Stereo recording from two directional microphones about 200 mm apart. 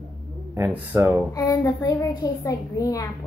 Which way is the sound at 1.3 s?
15° left (ahead or behind).